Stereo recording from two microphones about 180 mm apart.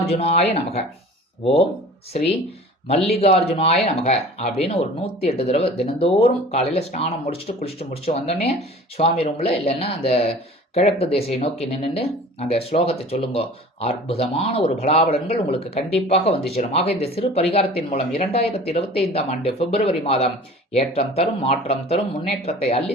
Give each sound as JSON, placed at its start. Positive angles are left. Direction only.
{"t": 0.0, "sound": "speech", "side_deg": 35}
{"t": 2.8, "sound": "speech", "side_deg": 35}